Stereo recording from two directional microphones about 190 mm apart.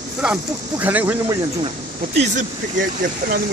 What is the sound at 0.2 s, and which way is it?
Speech, 10° right (ahead or behind).